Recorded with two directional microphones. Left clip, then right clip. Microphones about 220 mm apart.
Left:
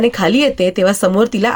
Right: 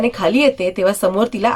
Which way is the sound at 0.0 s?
20° left (ahead or behind).